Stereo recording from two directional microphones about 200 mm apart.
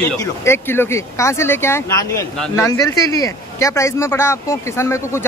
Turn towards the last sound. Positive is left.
turn(degrees=15)  # may be behind; listen again after turning